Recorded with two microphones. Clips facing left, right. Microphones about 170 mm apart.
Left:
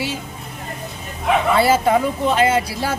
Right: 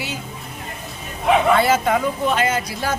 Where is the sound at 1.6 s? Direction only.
30° left (ahead or behind).